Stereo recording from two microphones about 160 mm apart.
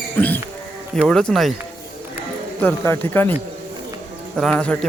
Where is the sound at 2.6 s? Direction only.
15° left (ahead or behind).